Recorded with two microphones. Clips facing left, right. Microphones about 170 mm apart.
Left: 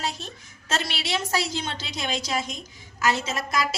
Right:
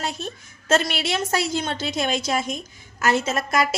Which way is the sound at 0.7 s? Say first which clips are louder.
Right 7 dB; 50° right (ahead or behind).